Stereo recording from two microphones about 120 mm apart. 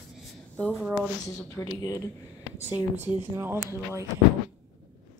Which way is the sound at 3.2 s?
20° right (ahead or behind).